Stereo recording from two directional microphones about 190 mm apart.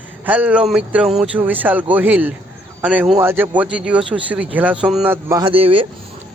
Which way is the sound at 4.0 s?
25° right (ahead or behind).